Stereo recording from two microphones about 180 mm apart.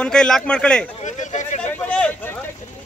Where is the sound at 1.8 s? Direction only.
5° left (ahead or behind).